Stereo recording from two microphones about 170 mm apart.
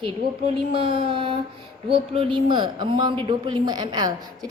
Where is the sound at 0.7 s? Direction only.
30° right (ahead or behind).